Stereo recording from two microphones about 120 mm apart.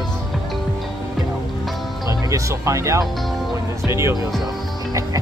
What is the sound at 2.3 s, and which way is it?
Speech, 25° right (ahead or behind).